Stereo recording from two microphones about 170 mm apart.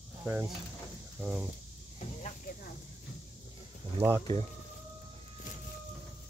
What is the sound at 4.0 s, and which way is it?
Speech, 35° right (ahead or behind).